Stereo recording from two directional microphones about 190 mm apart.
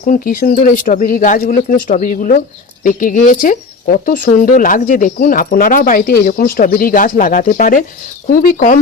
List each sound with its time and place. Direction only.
0.0 s speech: 45° left (ahead or behind)